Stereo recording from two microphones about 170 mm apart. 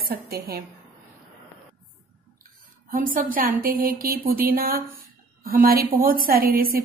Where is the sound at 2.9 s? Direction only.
55° right (ahead or behind).